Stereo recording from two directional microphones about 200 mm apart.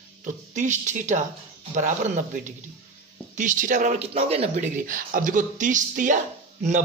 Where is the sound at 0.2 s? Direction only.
35° right (ahead or behind).